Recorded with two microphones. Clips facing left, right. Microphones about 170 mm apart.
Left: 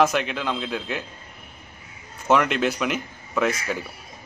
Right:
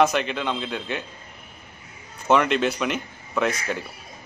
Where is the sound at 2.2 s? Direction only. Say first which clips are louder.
Even; centre (ahead or behind).